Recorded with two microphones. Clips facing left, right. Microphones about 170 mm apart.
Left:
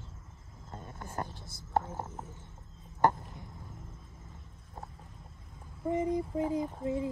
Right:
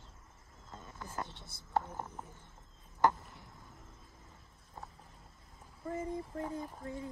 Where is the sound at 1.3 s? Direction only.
70° right (ahead or behind).